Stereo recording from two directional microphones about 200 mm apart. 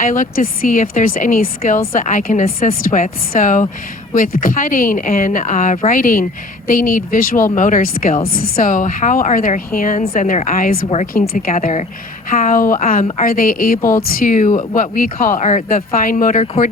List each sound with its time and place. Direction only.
0.0 s speech: 40° left (ahead or behind)